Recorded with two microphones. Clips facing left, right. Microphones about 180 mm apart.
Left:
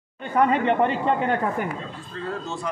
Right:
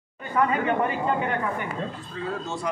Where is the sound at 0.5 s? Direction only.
30° left (ahead or behind).